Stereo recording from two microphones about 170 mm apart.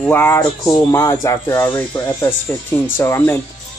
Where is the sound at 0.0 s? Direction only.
10° left (ahead or behind).